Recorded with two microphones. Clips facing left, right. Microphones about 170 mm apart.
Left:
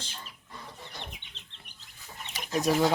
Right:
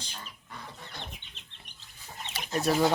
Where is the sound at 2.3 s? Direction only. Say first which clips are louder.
Left 1 dB; 15° left (ahead or behind).